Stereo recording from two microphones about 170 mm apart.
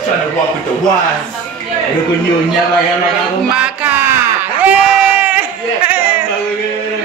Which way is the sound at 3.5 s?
10° right (ahead or behind).